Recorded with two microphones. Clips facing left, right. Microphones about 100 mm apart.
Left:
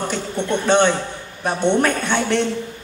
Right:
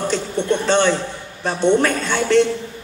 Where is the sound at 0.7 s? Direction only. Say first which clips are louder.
Left 4 dB; 20° left (ahead or behind).